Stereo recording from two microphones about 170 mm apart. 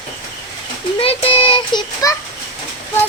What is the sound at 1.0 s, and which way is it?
Child singing, 35° left (ahead or behind).